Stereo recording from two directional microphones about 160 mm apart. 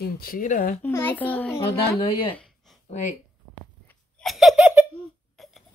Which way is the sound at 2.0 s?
35° left (ahead or behind).